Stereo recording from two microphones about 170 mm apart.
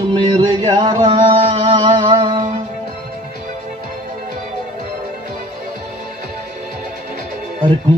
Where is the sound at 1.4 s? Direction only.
40° right (ahead or behind).